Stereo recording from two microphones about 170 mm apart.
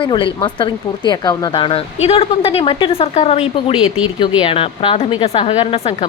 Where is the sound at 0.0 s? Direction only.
30° left (ahead or behind).